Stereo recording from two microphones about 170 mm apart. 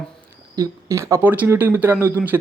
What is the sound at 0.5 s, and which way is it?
Speech, 15° right (ahead or behind).